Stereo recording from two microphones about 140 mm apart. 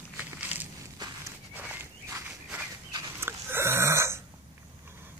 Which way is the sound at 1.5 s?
10° right (ahead or behind).